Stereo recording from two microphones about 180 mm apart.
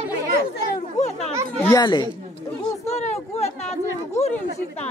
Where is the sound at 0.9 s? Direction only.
40° left (ahead or behind).